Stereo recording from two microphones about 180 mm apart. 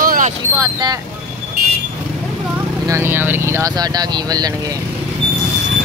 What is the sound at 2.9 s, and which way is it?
Speech, 15° right (ahead or behind).